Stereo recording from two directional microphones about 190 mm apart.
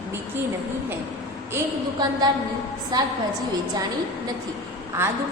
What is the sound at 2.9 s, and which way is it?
Speech, 20° right (ahead or behind).